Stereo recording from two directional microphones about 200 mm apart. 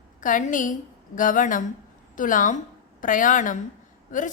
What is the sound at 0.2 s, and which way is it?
A woman's voice, 40° left (ahead or behind).